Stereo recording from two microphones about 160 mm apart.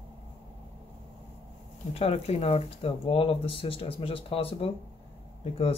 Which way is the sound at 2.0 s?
40° left (ahead or behind).